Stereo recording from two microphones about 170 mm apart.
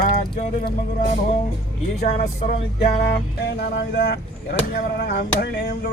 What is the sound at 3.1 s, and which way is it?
Speech, 70° left (ahead or behind).